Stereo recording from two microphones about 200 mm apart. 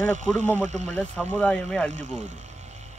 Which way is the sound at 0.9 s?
5° left (ahead or behind).